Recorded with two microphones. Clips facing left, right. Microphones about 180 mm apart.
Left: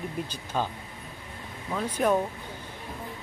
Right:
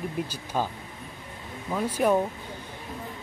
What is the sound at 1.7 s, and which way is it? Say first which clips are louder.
Speech: right 2 dB; 10° right (ahead or behind).